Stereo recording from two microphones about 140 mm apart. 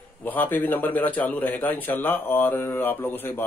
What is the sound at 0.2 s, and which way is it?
Speech, 15° left (ahead or behind).